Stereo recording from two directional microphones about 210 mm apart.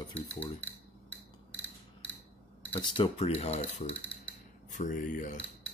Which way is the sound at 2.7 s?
25° left (ahead or behind).